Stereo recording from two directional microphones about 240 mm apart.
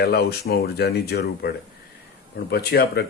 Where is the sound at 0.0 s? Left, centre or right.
Left.